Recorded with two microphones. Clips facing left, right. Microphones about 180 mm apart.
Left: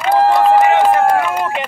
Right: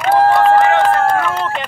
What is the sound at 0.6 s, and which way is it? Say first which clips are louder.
Run: left 1 dB; 15° left (ahead or behind).